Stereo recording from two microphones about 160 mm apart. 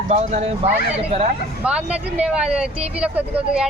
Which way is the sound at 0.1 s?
45° right (ahead or behind).